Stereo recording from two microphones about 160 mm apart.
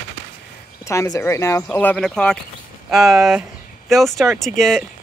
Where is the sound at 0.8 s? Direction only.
20° left (ahead or behind).